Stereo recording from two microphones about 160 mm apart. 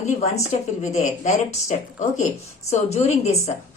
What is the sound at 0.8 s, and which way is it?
Speech, 50° left (ahead or behind).